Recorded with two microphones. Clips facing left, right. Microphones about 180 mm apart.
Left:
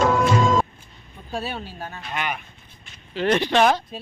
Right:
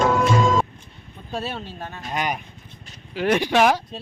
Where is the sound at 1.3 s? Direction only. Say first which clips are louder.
Even; centre (ahead or behind).